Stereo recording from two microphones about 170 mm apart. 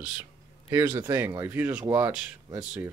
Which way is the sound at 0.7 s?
15° right (ahead or behind).